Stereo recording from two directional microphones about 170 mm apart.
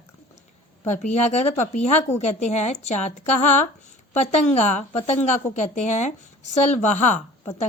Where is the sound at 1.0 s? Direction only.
40° left (ahead or behind).